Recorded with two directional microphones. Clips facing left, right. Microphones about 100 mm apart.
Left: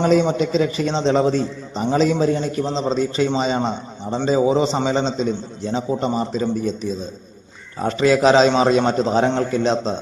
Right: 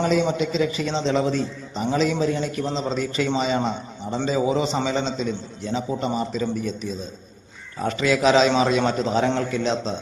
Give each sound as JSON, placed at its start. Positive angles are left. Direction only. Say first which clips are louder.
{"t": 0.0, "sound": "a man's voice", "louder": "left 4 dB", "side_deg": 40}